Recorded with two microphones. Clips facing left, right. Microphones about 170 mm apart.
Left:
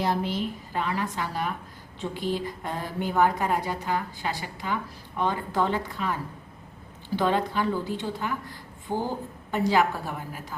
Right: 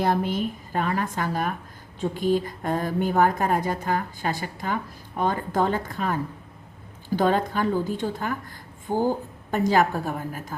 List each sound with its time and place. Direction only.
0.0 s a woman's voice: 50° right (ahead or behind)
7.2 s a woman's voice: 45° right (ahead or behind)